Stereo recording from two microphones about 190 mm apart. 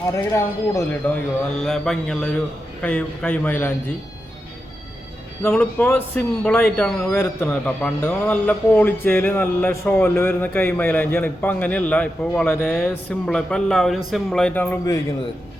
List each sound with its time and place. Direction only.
0.1 s speech: 15° left (ahead or behind)
1.6 s carnatic music: 5° left (ahead or behind)
2.8 s speech: 5° left (ahead or behind)
5.5 s speech: 10° left (ahead or behind)